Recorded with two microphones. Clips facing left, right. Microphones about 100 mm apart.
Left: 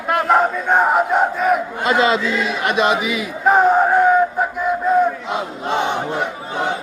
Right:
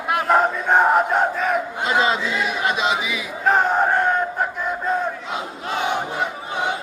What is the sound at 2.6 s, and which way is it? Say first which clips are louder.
Chant: left 5 dB; 55° left (ahead or behind).